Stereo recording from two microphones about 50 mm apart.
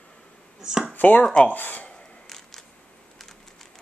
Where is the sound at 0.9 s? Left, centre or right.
Left.